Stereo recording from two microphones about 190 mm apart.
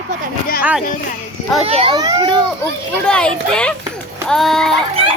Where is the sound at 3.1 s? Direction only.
5° left (ahead or behind).